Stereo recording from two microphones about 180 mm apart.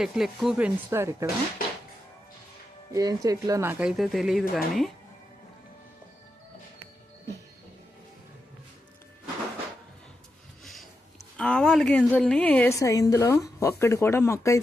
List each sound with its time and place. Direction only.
0.0 s speech: centre (ahead or behind)
2.9 s speech: 20° right (ahead or behind); by 4.9 s centre (ahead or behind)
10.6 s sniff: centre (ahead or behind)
11.3 s a woman's voice: 5° left (ahead or behind)